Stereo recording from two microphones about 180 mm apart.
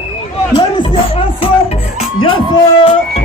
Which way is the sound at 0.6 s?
30° left (ahead or behind).